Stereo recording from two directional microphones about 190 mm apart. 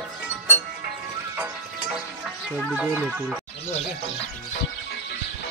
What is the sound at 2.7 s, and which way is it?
Speech, 5° right (ahead or behind).